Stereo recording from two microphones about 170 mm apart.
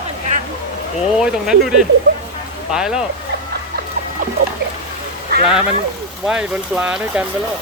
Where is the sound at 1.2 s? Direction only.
Centre (ahead or behind).